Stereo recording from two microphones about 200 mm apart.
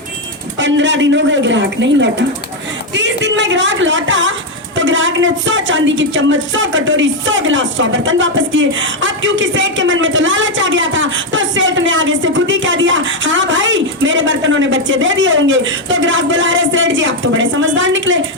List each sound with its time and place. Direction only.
0.6 s a woman's voice: 65° right (ahead or behind)